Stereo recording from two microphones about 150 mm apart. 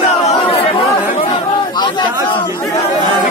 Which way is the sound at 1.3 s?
30° left (ahead or behind).